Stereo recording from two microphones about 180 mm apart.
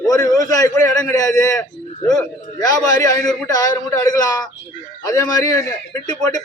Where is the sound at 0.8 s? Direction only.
15° left (ahead or behind).